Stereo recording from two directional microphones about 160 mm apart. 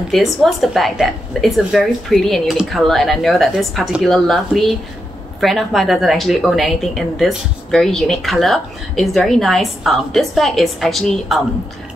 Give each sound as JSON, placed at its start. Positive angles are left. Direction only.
{"t": 0.1, "sound": "a woman's voice", "side_deg": 0}